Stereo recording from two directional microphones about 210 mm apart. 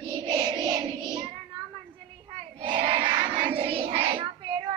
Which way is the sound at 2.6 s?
20° right (ahead or behind).